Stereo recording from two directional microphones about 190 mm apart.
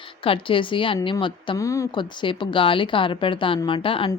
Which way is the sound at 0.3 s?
25° left (ahead or behind).